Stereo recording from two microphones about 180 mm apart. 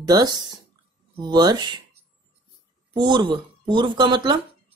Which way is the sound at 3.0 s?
25° right (ahead or behind).